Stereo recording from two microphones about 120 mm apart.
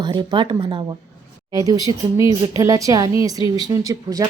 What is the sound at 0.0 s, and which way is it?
Speech, 35° right (ahead or behind).